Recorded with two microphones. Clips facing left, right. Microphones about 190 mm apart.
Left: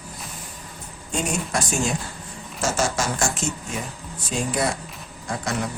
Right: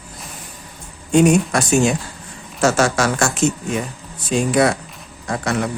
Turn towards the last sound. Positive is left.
turn(degrees=-65)  # may be behind; listen again after turning